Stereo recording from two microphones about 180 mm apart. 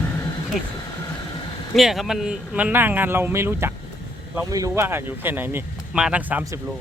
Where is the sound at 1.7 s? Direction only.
Centre (ahead or behind).